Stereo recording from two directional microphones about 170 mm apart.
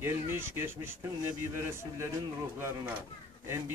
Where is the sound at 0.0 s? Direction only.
15° right (ahead or behind).